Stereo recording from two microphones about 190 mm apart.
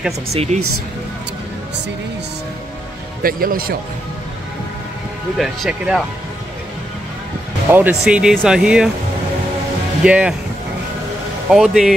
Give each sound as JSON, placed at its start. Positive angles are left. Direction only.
{"t": 0.3, "sound": "speech", "side_deg": -35}
{"t": 3.2, "sound": "speech", "side_deg": -50}
{"t": 5.4, "sound": "speech", "side_deg": -5}
{"t": 7.7, "sound": "speech", "side_deg": -10}
{"t": 10.0, "sound": "speech", "side_deg": -5}
{"t": 11.5, "sound": "speech", "side_deg": 0}